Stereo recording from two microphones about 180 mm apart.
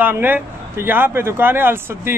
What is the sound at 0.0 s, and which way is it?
Speech, 10° right (ahead or behind).